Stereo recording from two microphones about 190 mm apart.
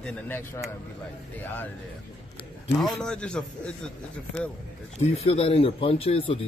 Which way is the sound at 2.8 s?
5° left (ahead or behind).